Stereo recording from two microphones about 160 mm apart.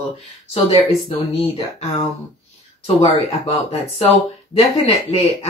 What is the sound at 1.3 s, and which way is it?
Speech, 40° left (ahead or behind).